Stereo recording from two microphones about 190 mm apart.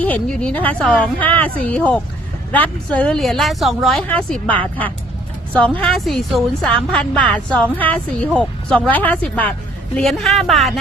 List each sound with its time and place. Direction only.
0.0 s a woman's voice: 5° left (ahead or behind)
5.5 s a woman's voice: 5° left (ahead or behind)